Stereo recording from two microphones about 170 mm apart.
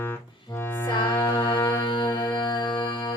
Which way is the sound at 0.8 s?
30° left (ahead or behind).